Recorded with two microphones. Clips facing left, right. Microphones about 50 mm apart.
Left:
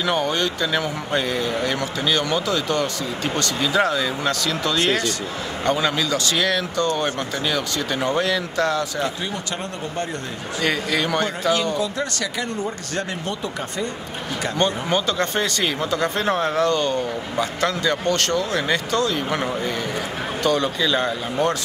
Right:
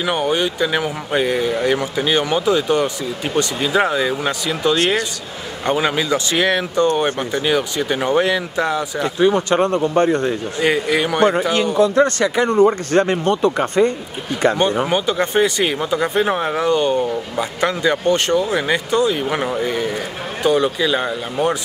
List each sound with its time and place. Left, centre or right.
0.0 s speech: centre
4.7 s speech: right
9.2 s speech: right
10.6 s speech: centre
11.8 s speech: right
14.9 s speech: centre